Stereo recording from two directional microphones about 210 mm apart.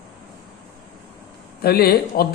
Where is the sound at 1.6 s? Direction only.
50° left (ahead or behind).